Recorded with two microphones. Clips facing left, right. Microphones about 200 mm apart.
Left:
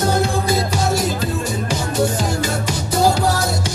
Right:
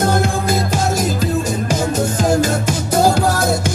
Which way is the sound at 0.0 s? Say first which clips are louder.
Right 1 dB; 50° right (ahead or behind).